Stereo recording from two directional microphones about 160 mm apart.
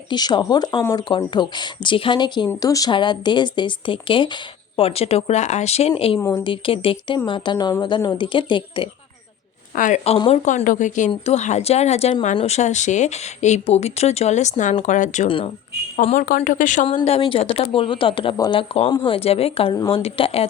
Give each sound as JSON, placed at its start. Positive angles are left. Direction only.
{"t": 0.1, "sound": "speech", "side_deg": 25}
{"t": 6.1, "sound": "a woman's voice", "side_deg": 15}
{"t": 6.4, "sound": "speech", "side_deg": 30}
{"t": 9.7, "sound": "a woman's voice", "side_deg": 50}
{"t": 16.1, "sound": "a woman's voice", "side_deg": 60}
{"t": 17.1, "sound": "speech", "side_deg": 35}